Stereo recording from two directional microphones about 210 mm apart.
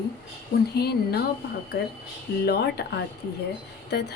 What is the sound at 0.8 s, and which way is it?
Speech, 50° left (ahead or behind).